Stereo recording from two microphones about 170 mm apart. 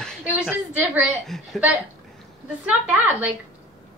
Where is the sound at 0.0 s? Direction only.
5° left (ahead or behind).